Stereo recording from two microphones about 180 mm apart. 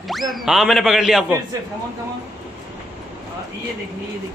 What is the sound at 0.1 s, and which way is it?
Speech, centre (ahead or behind).